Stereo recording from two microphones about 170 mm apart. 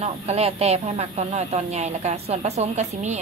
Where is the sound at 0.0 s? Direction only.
40° right (ahead or behind).